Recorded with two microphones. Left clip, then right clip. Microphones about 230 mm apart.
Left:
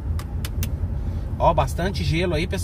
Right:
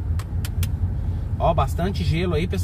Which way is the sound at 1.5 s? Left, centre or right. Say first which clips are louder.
Left 1 dB; left.